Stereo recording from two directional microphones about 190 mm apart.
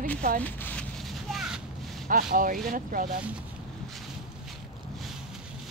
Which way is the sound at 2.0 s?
45° right (ahead or behind).